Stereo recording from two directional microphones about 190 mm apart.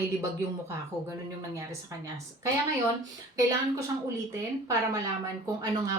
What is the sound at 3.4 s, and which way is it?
A woman's voice, 20° right (ahead or behind).